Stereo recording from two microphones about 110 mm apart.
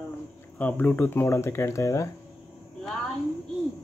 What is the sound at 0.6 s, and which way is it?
Speech, 15° left (ahead or behind).